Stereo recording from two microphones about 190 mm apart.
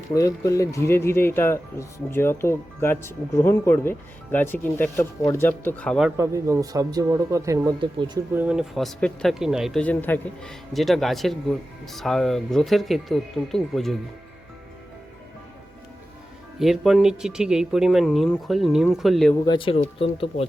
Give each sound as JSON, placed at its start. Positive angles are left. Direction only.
{"t": 0.1, "sound": "speech", "side_deg": 15}
{"t": 6.1, "sound": "speech", "side_deg": -15}
{"t": 8.3, "sound": "speech", "side_deg": -10}
{"t": 16.6, "sound": "speech", "side_deg": 0}
{"t": 19.5, "sound": "speech", "side_deg": 25}